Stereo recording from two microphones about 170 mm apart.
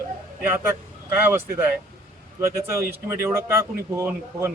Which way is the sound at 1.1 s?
15° right (ahead or behind).